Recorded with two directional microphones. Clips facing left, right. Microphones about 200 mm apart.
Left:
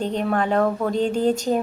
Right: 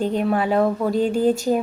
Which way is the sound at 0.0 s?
5° right (ahead or behind).